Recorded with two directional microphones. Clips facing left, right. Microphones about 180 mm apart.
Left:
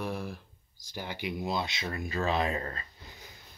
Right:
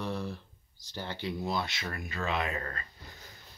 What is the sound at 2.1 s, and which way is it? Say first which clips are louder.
Speech: left 4 dB; 35° left (ahead or behind).